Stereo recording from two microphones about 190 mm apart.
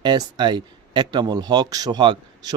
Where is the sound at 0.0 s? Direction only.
25° right (ahead or behind).